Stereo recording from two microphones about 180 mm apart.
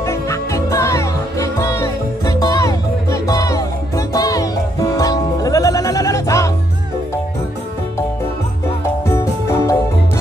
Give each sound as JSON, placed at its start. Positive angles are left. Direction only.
{"t": 0.0, "sound": "music", "side_deg": 15}
{"t": 9.0, "sound": "music", "side_deg": 15}